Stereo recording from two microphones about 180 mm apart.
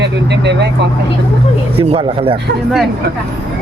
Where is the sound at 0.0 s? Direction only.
75° right (ahead or behind).